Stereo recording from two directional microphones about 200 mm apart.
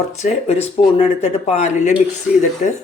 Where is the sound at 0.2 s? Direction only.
30° left (ahead or behind).